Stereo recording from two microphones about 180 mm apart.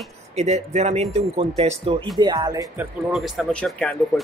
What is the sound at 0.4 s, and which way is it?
Speech, 35° right (ahead or behind).